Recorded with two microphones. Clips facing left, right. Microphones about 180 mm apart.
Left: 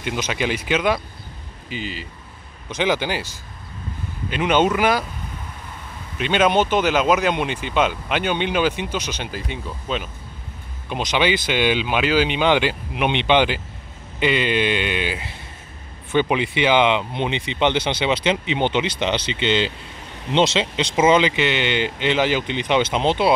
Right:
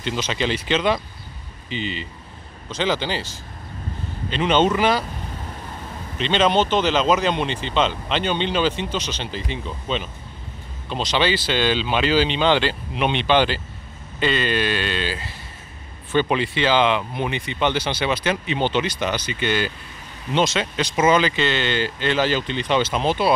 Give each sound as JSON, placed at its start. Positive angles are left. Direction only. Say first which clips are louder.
{"t": 0.0, "sound": "speech", "louder": "even", "side_deg": 10}
{"t": 6.1, "sound": "speech", "louder": "left 1 dB", "side_deg": 10}